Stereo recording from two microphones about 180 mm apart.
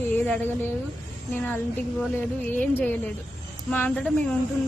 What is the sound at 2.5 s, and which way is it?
Speech, 10° left (ahead or behind).